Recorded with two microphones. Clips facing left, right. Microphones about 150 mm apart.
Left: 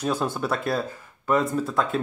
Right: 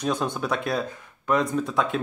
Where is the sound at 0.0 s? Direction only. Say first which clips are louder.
Even; 5° left (ahead or behind).